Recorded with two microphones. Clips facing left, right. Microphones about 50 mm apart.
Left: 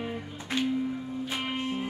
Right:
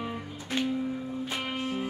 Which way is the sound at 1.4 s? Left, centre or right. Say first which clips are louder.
Left 1 dB; centre.